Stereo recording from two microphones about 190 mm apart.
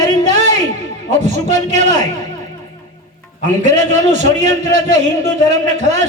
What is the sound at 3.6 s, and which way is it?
A man's voice, 35° right (ahead or behind).